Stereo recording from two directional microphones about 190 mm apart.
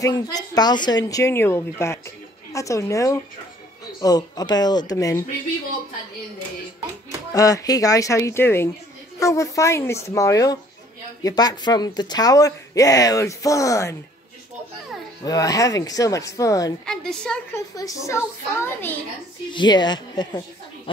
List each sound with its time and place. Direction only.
0.0 s speech: 20° left (ahead or behind)
7.3 s speech: 20° left (ahead or behind)
15.2 s speech: 20° left (ahead or behind)
16.8 s a woman's voice: 5° left (ahead or behind)
17.6 s speech: 15° left (ahead or behind)
19.5 s speech: 25° left (ahead or behind)